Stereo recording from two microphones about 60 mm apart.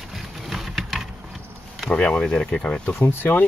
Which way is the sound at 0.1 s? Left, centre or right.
Centre.